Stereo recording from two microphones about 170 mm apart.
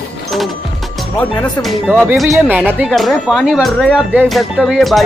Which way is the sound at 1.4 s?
Centre (ahead or behind).